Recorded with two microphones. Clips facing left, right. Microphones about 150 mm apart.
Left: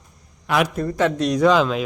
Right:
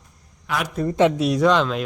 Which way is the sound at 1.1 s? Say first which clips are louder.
Left 1 dB; 5° right (ahead or behind).